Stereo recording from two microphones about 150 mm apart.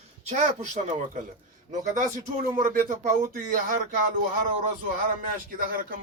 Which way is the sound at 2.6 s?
60° right (ahead or behind).